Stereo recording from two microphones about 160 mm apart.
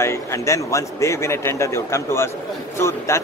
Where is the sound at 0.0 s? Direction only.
15° left (ahead or behind).